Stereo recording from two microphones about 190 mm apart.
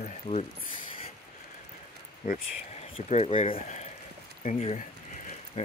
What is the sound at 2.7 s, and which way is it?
Speech, 35° left (ahead or behind).